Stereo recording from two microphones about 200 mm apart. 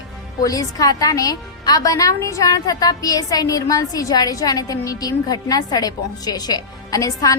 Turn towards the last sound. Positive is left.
turn(degrees=15)  # may be behind; listen again after turning